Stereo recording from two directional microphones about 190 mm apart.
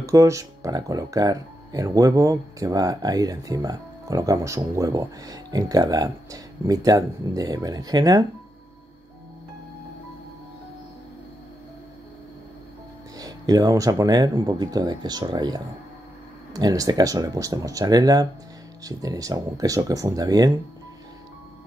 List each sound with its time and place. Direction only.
0.0 s speech: 15° right (ahead or behind)
13.2 s speech: 20° right (ahead or behind)